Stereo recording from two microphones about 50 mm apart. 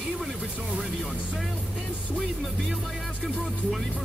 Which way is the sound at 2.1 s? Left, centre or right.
Centre.